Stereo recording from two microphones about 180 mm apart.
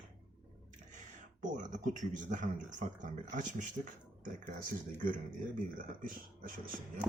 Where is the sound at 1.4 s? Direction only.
45° right (ahead or behind).